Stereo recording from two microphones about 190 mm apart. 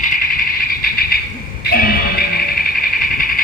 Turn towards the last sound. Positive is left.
turn(degrees=50)  # may be behind; listen again after turning